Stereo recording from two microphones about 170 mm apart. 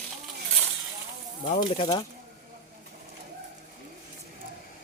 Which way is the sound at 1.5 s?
25° left (ahead or behind).